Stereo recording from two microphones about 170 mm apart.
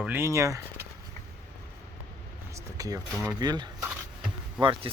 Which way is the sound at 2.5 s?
20° right (ahead or behind).